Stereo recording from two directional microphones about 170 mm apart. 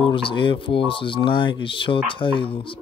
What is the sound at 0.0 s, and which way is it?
Speech, 30° left (ahead or behind).